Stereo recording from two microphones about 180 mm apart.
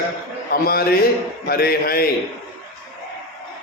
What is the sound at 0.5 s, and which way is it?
Speech, 55° left (ahead or behind).